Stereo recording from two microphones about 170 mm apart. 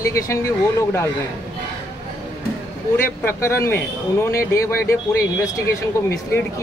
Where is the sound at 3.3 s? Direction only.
15° left (ahead or behind).